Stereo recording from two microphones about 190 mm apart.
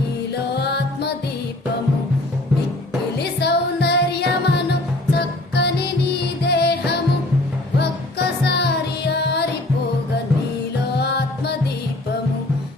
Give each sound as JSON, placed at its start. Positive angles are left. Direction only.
{"t": 0.5, "sound": "music", "side_deg": 60}
{"t": 3.4, "sound": "music", "side_deg": 60}
{"t": 8.4, "sound": "music", "side_deg": 60}
{"t": 10.9, "sound": "music", "side_deg": 60}